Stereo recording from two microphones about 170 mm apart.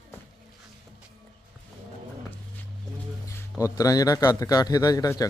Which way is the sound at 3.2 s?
20° left (ahead or behind).